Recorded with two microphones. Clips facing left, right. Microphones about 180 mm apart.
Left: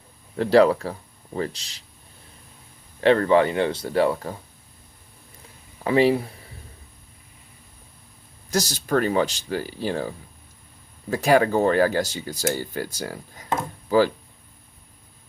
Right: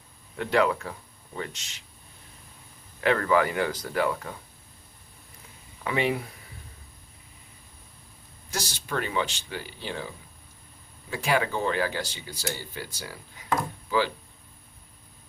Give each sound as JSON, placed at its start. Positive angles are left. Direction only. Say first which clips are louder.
{"t": 0.3, "sound": "speech", "louder": "left 8 dB", "side_deg": 35}
{"t": 3.0, "sound": "speech", "louder": "left 6 dB", "side_deg": 30}
{"t": 5.8, "sound": "speech", "louder": "left 8 dB", "side_deg": 35}
{"t": 8.4, "sound": "speech", "louder": "left 9 dB", "side_deg": 40}